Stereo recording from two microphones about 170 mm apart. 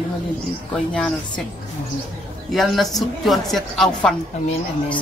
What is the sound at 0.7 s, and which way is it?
Speech, centre (ahead or behind).